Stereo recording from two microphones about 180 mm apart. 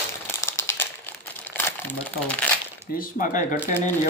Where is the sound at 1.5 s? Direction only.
10° left (ahead or behind).